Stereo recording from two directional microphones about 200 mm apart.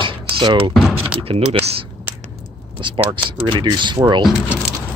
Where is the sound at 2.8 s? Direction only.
25° right (ahead or behind).